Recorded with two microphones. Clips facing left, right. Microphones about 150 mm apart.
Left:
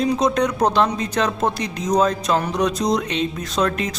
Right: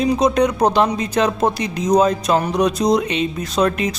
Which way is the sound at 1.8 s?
20° right (ahead or behind).